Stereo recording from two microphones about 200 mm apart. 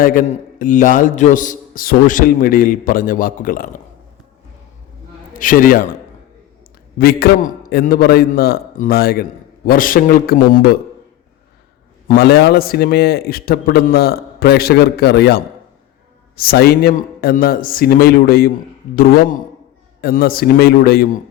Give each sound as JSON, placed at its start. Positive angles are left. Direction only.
{"t": 0.0, "sound": "a man's voice", "side_deg": 45}
{"t": 5.4, "sound": "a man's voice", "side_deg": 45}
{"t": 7.0, "sound": "a man's voice", "side_deg": 50}
{"t": 12.0, "sound": "a man's voice", "side_deg": 55}